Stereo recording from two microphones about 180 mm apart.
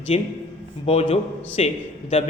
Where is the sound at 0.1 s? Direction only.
35° left (ahead or behind).